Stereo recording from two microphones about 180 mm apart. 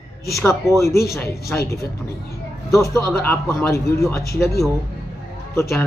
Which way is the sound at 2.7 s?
15° left (ahead or behind).